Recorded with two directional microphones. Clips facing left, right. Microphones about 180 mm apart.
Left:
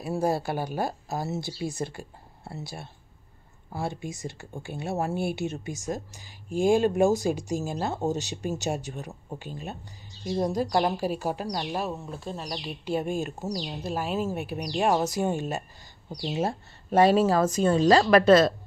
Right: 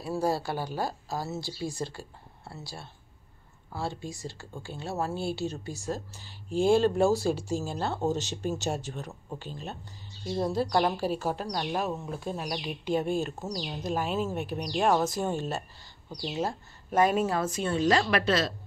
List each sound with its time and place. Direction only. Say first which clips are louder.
0.0 s speech: left 2 dB; 20° left (ahead or behind); by 15.0 s 5° left (ahead or behind)
15.0 s speech: left 2 dB; 15° left (ahead or behind)
16.1 s speech: left 3 dB; 25° left (ahead or behind)
17.3 s a woman's voice: left 7 dB; 40° left (ahead or behind)